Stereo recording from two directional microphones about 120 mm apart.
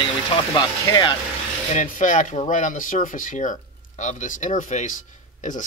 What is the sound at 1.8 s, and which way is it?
Speech, 90° left.